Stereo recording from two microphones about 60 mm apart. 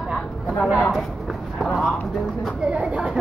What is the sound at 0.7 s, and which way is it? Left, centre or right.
Speech, centre.